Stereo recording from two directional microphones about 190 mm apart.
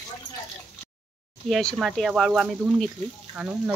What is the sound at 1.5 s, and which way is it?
Speech, centre (ahead or behind).